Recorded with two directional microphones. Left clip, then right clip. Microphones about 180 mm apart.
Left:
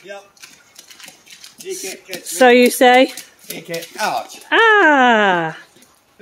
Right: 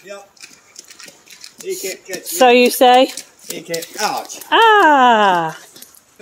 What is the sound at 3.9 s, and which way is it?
Speech, 15° left (ahead or behind).